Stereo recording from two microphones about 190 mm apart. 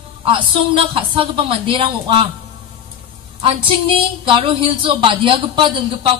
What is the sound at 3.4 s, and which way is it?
A woman's voice, 25° right (ahead or behind).